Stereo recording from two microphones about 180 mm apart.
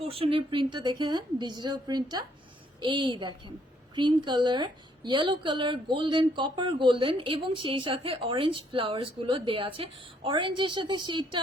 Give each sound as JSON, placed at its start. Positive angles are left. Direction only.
{"t": 0.1, "sound": "a woman's voice", "side_deg": -30}